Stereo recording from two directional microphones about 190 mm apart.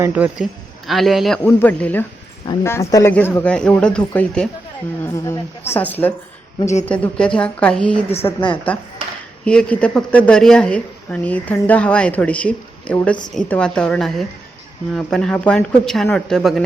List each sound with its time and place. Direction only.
0.0 s a man's voice: 10° right (ahead or behind)
8.2 s a woman's voice: 20° left (ahead or behind)
8.7 s a man's voice: 10° left (ahead or behind)